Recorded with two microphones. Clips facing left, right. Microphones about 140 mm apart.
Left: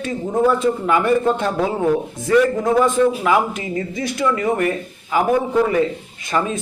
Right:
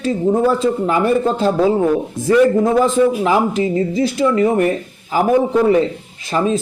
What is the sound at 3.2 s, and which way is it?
A man's voice, 30° right (ahead or behind).